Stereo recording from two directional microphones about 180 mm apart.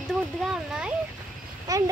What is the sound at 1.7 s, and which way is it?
Speech, 20° right (ahead or behind).